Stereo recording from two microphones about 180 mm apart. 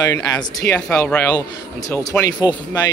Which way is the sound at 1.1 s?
5° left (ahead or behind).